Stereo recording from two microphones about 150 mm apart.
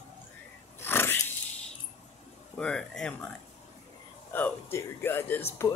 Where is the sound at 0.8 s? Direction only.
15° left (ahead or behind).